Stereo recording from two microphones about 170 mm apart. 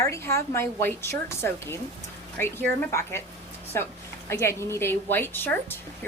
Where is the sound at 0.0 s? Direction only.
15° left (ahead or behind).